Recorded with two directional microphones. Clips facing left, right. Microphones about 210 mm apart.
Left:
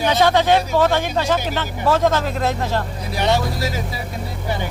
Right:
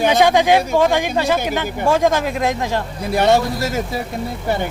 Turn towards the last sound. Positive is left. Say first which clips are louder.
# right 4 dB
turn(degrees=-50)  # may be behind; listen again after turning